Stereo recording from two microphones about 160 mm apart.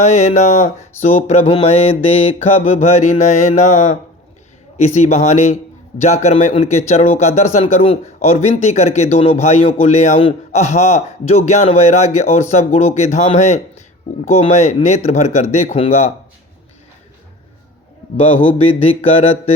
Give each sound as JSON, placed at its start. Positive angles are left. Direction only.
{"t": 0.0, "sound": "speech", "side_deg": 45}
{"t": 1.0, "sound": "mantra", "side_deg": 40}
{"t": 1.6, "sound": "speech", "side_deg": 45}
{"t": 4.9, "sound": "speech", "side_deg": 45}
{"t": 18.3, "sound": "mantra", "side_deg": 40}